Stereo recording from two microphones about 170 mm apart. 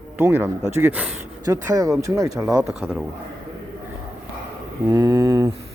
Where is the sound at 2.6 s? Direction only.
5° right (ahead or behind).